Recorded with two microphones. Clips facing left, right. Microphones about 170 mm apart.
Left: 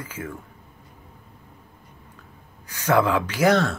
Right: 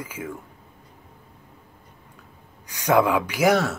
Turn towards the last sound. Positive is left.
turn(degrees=-10)  # may be behind; listen again after turning